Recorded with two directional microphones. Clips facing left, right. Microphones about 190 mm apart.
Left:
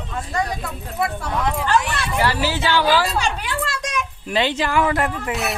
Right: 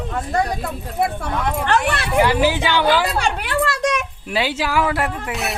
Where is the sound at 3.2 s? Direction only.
60° right (ahead or behind).